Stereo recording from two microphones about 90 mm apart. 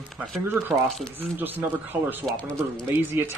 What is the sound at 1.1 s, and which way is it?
A man's voice, 20° right (ahead or behind).